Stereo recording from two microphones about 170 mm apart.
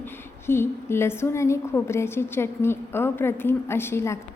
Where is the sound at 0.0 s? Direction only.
15° left (ahead or behind).